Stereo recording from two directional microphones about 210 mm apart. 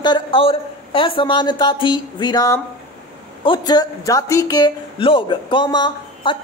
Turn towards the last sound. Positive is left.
turn(degrees=20)  # may be behind; listen again after turning